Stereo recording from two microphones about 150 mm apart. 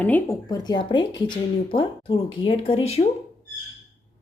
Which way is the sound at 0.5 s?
30° left (ahead or behind).